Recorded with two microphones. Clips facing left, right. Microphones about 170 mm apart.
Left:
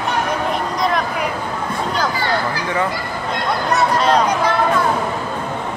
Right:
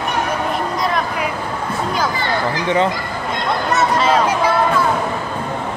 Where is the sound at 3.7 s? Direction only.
Centre (ahead or behind).